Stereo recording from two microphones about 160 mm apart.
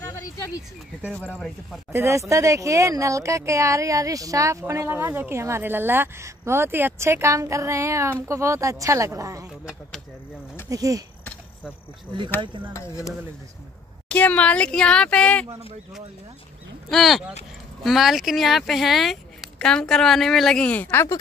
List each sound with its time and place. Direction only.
0.0 s a sound: 20° left (ahead or behind)
1.0 s speech: 10° left (ahead or behind)
1.9 s speech: 15° right (ahead or behind)
10.7 s speech: 20° right (ahead or behind)
12.7 s speech: 20° left (ahead or behind)
14.0 s speech: 10° left (ahead or behind)
16.9 s speech: centre (ahead or behind)